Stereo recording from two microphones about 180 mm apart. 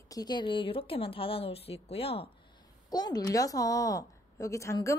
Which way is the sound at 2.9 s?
20° left (ahead or behind).